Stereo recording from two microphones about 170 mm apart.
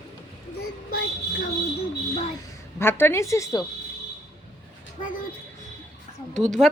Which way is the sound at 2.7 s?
15° left (ahead or behind).